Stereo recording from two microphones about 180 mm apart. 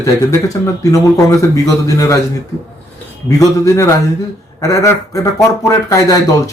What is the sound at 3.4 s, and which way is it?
Speech, 15° left (ahead or behind).